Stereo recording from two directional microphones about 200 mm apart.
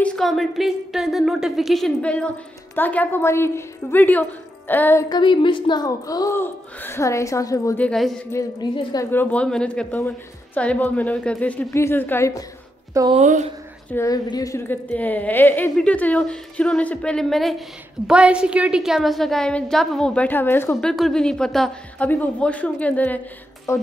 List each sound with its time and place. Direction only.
0.0 s a woman's voice: 5° left (ahead or behind)
5.1 s a woman's voice: 25° left (ahead or behind); by 8.2 s centre (ahead or behind)
8.3 s a woman's voice: 15° left (ahead or behind)
13.1 s speech: 35° right (ahead or behind)
13.9 s a woman's voice: 20° left (ahead or behind)